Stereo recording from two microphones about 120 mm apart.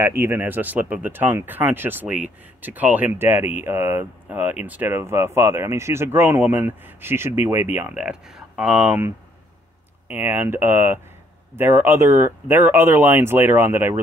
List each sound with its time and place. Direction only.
0.0 s speech: 20° right (ahead or behind)
10.0 s speech: 15° right (ahead or behind)